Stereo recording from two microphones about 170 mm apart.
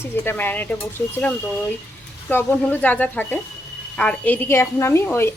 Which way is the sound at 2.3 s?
10° left (ahead or behind).